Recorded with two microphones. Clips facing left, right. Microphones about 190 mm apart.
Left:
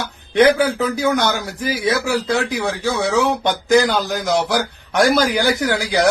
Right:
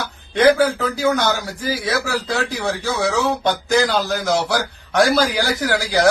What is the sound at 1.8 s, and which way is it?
A man's voice, 20° left (ahead or behind).